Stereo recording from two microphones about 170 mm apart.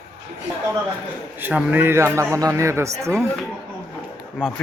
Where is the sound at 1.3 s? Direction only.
10° right (ahead or behind).